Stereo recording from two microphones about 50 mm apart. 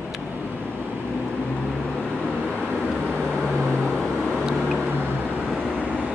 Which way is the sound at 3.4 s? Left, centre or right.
Centre.